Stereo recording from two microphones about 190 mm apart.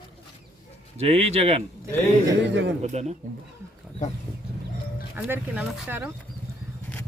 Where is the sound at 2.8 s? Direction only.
35° right (ahead or behind).